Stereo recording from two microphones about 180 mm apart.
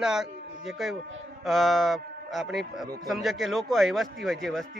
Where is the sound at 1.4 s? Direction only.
Centre (ahead or behind).